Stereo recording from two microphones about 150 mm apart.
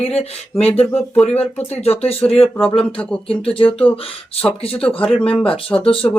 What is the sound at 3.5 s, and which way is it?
Speech, 40° left (ahead or behind).